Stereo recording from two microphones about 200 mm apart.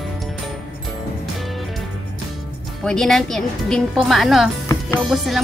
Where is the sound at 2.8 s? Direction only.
5° left (ahead or behind).